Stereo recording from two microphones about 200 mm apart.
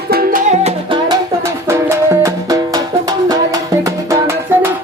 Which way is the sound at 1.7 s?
15° right (ahead or behind).